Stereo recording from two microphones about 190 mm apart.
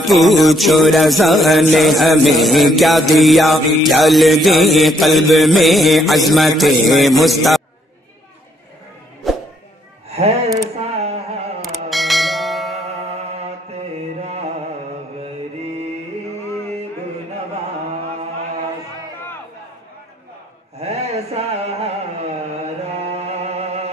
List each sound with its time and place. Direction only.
0.0 s music: centre (ahead or behind)
9.2 s music: centre (ahead or behind)
10.8 s a sound: 35° right (ahead or behind)
11.6 s bell: centre (ahead or behind)
14.2 s music: 35° right (ahead or behind)
20.8 s mantra: 35° right (ahead or behind)
22.8 s music: 35° right (ahead or behind)